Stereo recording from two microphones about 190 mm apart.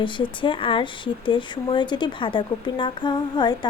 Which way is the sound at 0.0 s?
25° left (ahead or behind).